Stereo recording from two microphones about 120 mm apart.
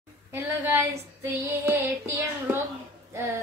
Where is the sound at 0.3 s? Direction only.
15° right (ahead or behind).